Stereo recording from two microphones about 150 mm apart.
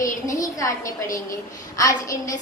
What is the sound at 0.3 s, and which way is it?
A woman's voice, 20° left (ahead or behind).